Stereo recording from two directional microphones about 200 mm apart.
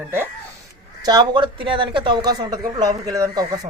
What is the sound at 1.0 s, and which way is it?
A woman's voice, 20° right (ahead or behind).